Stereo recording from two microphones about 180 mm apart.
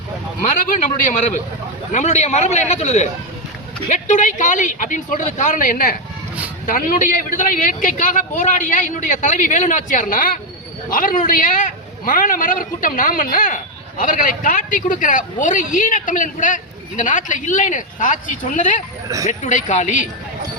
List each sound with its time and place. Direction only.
1.9 s a man's voice: 40° left (ahead or behind)
19.0 s speech: 20° right (ahead or behind)
19.3 s a woman's voice: 45° left (ahead or behind)